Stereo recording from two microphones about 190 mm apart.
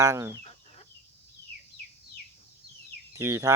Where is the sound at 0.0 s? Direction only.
15° right (ahead or behind).